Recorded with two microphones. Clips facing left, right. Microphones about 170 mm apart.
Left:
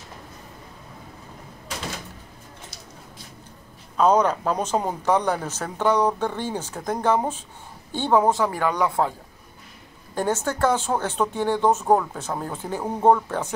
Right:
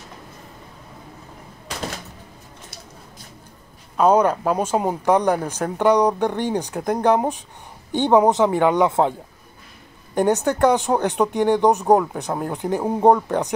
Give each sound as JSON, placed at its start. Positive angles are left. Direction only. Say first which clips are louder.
{"t": 3.9, "sound": "speech", "louder": "right 3 dB", "side_deg": -10}
{"t": 10.1, "sound": "speech", "louder": "right 6 dB", "side_deg": -15}